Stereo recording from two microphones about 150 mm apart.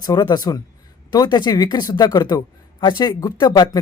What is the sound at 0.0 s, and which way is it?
Speech, 25° left (ahead or behind).